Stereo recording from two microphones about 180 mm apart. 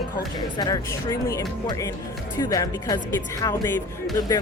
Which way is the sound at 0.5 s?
25° left (ahead or behind).